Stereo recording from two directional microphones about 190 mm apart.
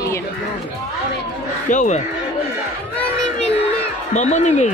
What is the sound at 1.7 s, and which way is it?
Speech, 40° left (ahead or behind).